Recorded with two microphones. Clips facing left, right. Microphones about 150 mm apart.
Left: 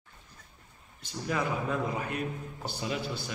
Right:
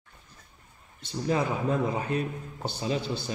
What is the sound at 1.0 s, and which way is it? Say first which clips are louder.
A man's voice: right 4 dB; 30° right (ahead or behind).